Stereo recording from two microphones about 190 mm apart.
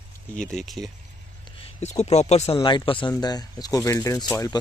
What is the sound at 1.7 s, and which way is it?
Speech, 35° left (ahead or behind).